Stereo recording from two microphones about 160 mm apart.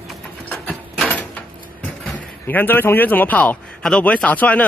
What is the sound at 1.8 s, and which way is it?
Speech, centre (ahead or behind).